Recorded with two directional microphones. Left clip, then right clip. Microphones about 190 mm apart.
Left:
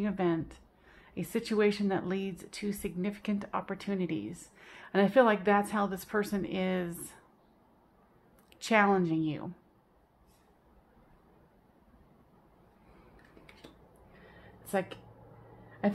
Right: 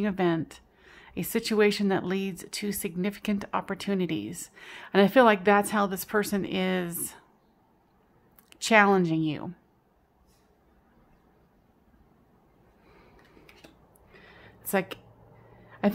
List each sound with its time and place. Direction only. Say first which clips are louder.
0.0 s a woman's voice: right 4 dB; 25° right (ahead or behind)
8.5 s a woman's voice: right 6 dB; 30° right (ahead or behind)
14.1 s a sound: right 5 dB; 35° right (ahead or behind)
15.8 s speech: right 4 dB; 40° right (ahead or behind)